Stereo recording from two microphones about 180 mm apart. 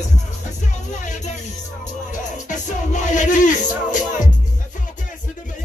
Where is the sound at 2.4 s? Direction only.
45° left (ahead or behind).